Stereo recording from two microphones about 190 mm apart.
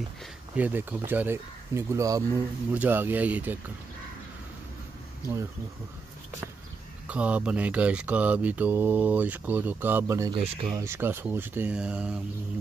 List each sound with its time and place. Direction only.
0.6 s mantra: 10° right (ahead or behind)
7.1 s mantra: 5° right (ahead or behind)
10.3 s speech: 30° right (ahead or behind)
10.8 s mantra: 10° right (ahead or behind)